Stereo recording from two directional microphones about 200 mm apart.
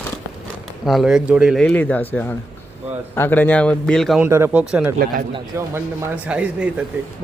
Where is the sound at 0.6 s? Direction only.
Centre (ahead or behind).